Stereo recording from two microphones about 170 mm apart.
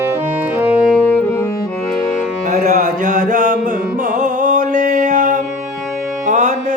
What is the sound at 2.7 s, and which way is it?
Mantra, 50° right (ahead or behind).